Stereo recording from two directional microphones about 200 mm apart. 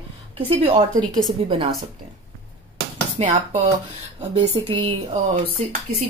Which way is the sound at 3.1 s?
25° right (ahead or behind).